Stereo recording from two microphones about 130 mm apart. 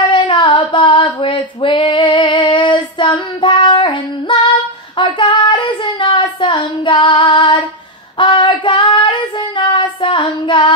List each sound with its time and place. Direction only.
0.0 s female singing: 35° left (ahead or behind)
4.9 s child singing: 40° left (ahead or behind)